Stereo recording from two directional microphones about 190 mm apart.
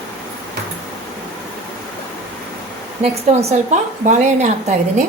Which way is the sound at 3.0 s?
35° right (ahead or behind).